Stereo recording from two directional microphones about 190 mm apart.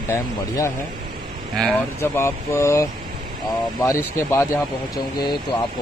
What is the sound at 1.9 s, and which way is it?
Speech, 15° left (ahead or behind).